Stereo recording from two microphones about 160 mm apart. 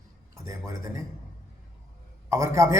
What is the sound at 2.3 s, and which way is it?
Speech, 20° right (ahead or behind).